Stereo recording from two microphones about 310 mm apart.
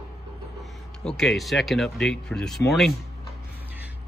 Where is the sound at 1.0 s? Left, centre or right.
Centre.